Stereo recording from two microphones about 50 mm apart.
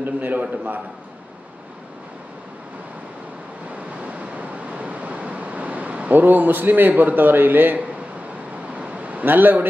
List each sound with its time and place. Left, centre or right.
0.0 s a man's voice: right
4.0 s waves: right
8.7 s a sound: right